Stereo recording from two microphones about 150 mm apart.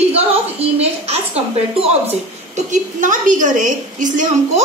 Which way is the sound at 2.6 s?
55° right (ahead or behind).